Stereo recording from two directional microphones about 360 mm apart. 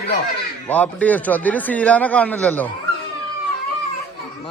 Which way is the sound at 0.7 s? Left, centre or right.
Centre.